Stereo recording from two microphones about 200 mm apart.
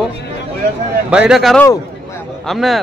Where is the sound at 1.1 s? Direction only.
5° right (ahead or behind).